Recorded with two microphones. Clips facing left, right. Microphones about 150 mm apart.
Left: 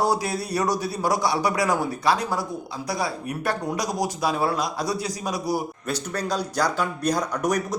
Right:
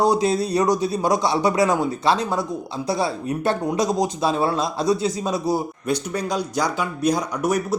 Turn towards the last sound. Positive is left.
turn(degrees=-10)  # may be behind; listen again after turning